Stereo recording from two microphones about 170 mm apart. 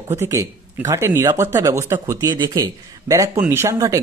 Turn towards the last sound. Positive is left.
turn(degrees=-20)  # may be behind; listen again after turning